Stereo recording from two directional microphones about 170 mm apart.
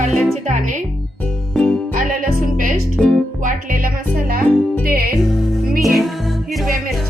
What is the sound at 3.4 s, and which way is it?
Music, 55° right (ahead or behind).